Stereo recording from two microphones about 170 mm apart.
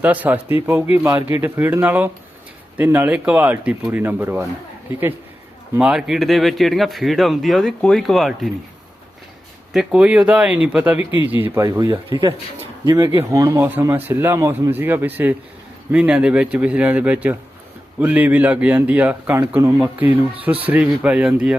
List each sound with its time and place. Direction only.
0.0 s speech: 10° right (ahead or behind)
5.7 s speech: 5° right (ahead or behind)
9.7 s speech: 5° right (ahead or behind)